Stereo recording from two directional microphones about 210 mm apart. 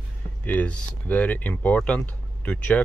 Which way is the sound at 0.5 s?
10° left (ahead or behind).